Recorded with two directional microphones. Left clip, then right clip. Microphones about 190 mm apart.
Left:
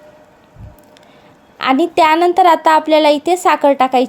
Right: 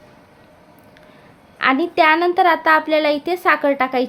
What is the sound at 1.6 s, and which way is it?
A woman's voice, 25° left (ahead or behind).